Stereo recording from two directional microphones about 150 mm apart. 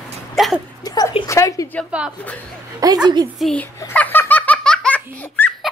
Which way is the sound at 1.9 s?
5° right (ahead or behind).